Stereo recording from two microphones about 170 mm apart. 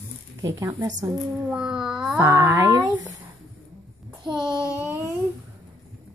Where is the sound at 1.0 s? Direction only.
5° right (ahead or behind).